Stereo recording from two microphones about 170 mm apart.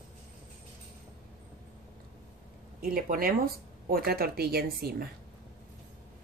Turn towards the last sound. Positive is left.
turn(degrees=-65)  # may be behind; listen again after turning